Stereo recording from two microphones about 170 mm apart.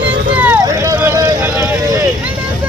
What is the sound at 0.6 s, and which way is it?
Vehicle, 20° right (ahead or behind).